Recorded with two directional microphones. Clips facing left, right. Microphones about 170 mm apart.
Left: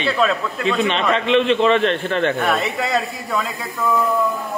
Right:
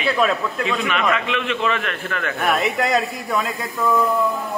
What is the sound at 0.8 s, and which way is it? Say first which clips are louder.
A man's voice: left 2 dB; 30° left (ahead or behind).